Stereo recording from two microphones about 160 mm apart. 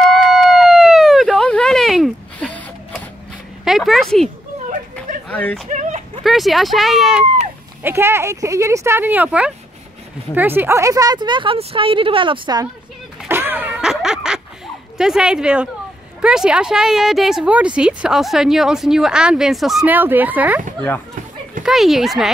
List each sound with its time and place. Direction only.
0.4 s a sound: centre (ahead or behind)
3.6 s a sound: centre (ahead or behind)
5.3 s speech: 10° left (ahead or behind)
5.7 s a sound: 45° right (ahead or behind)
6.2 s a woman's voice: centre (ahead or behind)
7.8 s a woman's voice: 15° right (ahead or behind)
13.3 s power windows: 15° right (ahead or behind)
15.0 s a woman's voice: 5° right (ahead or behind)
21.6 s a woman's voice: centre (ahead or behind)